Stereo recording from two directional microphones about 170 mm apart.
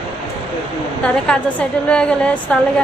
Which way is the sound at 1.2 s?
5° left (ahead or behind).